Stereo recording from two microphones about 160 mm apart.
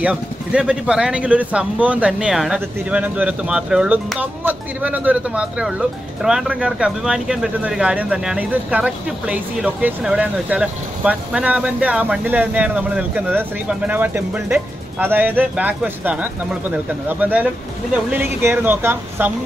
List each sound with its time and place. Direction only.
0.0 s speech: 5° right (ahead or behind)